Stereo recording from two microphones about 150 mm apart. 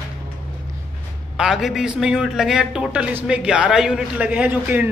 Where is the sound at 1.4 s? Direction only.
Centre (ahead or behind).